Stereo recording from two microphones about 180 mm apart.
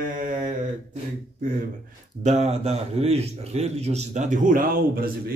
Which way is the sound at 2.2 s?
35° right (ahead or behind).